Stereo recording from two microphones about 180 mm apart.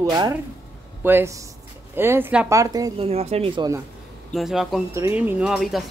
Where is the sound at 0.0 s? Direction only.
20° right (ahead or behind).